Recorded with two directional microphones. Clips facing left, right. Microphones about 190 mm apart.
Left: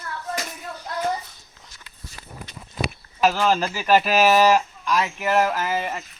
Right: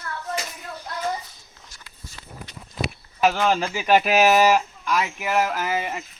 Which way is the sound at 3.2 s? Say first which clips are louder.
Even; 15° right (ahead or behind).